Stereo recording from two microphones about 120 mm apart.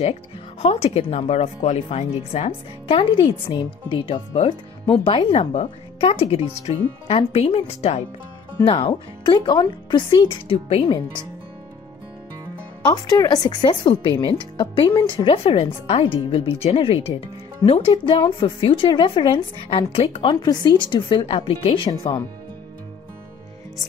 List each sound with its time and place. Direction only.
0.6 s speech: 55° left (ahead or behind)
5.5 s speech: 55° left (ahead or behind)
12.8 s speech: 35° left (ahead or behind)